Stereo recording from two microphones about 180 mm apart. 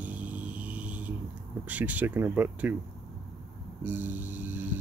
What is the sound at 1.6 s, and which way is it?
Speech, 10° right (ahead or behind).